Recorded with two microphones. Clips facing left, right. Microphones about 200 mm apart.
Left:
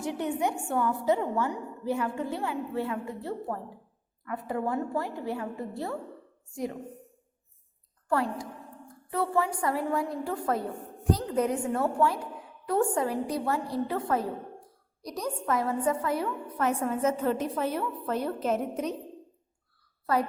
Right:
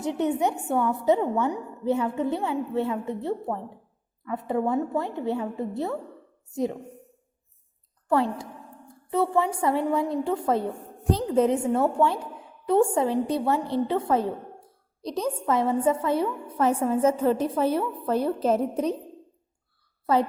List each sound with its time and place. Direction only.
0.0 s a woman's voice: 20° right (ahead or behind)
8.0 s a woman's voice: 25° right (ahead or behind)